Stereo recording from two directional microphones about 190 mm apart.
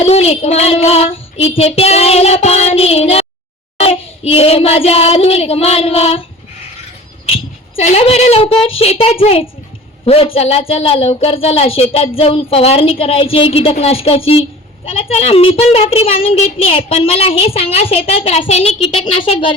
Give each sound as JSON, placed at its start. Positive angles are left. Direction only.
{"t": 0.0, "sound": "speech", "side_deg": 35}
{"t": 7.8, "sound": "speech", "side_deg": 35}